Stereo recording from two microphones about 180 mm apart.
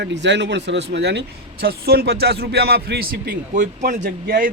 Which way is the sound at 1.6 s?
60° right (ahead or behind).